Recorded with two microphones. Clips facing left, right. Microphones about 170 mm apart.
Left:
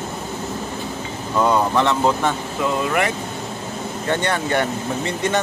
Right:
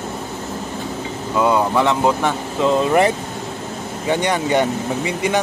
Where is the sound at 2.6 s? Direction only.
30° right (ahead or behind).